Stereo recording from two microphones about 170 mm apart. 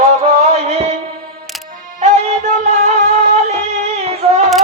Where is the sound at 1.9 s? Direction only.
45° right (ahead or behind).